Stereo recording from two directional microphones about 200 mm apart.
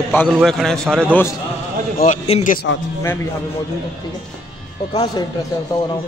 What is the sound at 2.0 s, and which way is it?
Speech, 35° left (ahead or behind).